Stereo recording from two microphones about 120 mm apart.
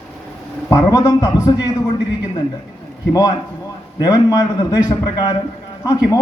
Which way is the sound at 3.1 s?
30° left (ahead or behind).